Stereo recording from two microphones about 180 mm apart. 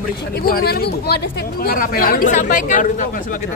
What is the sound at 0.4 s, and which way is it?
Speech, 60° left (ahead or behind).